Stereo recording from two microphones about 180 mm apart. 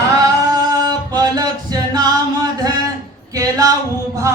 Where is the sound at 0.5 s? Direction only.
20° right (ahead or behind).